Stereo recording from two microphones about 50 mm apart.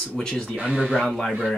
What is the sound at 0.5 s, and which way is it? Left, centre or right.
Speech, right.